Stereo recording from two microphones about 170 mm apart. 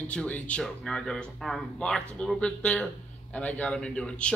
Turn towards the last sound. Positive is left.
turn(degrees=5)  # may be behind; listen again after turning